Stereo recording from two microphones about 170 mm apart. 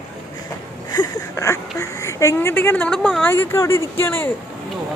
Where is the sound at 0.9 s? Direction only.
20° left (ahead or behind).